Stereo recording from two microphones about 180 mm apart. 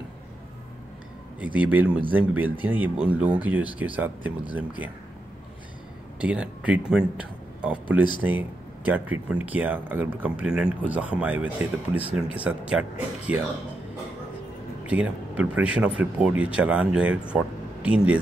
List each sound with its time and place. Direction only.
1.4 s speech: 10° right (ahead or behind)
6.2 s speech: 5° right (ahead or behind)
14.9 s speech: 5° right (ahead or behind)